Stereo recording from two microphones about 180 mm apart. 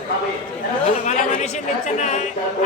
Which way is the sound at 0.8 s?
45° left (ahead or behind).